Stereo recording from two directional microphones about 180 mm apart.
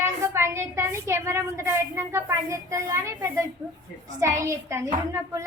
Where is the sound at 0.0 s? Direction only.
15° right (ahead or behind).